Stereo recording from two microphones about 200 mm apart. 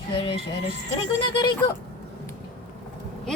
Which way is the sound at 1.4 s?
20° left (ahead or behind).